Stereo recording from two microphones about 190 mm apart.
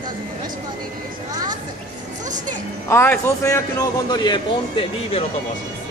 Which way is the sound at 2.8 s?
10° left (ahead or behind).